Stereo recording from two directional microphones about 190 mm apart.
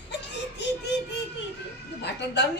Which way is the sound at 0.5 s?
65° left (ahead or behind).